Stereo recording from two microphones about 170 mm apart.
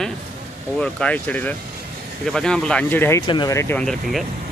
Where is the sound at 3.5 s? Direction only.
15° left (ahead or behind).